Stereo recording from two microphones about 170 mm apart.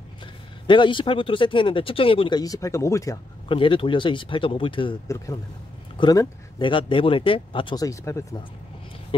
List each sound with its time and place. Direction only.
0.7 s speech: 30° left (ahead or behind)
3.4 s speech: 30° left (ahead or behind)
5.0 s speech: 20° left (ahead or behind)